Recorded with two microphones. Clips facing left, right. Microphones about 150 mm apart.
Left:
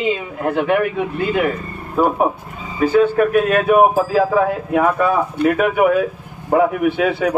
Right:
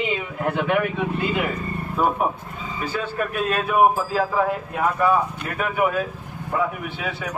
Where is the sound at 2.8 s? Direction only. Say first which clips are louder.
Left 13 dB; 60° left (ahead or behind).